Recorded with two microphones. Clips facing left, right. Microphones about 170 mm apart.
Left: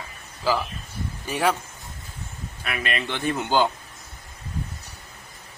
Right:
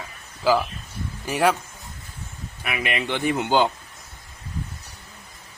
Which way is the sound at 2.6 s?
15° right (ahead or behind).